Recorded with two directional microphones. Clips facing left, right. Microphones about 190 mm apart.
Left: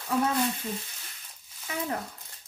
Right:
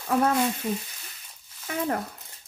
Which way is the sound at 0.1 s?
60° right (ahead or behind).